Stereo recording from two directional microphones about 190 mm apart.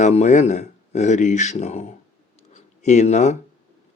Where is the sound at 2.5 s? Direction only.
40° left (ahead or behind).